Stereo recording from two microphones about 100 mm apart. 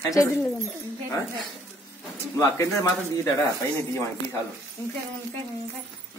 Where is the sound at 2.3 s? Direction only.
30° left (ahead or behind).